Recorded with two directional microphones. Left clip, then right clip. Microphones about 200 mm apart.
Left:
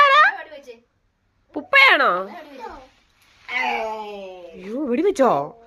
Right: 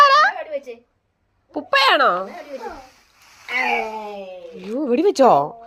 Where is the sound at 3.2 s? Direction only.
65° right (ahead or behind).